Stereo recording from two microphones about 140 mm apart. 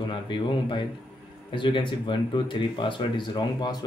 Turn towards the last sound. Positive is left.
turn(degrees=30)  # may be behind; listen again after turning